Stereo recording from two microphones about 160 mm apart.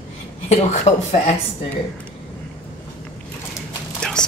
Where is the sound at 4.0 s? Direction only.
5° left (ahead or behind).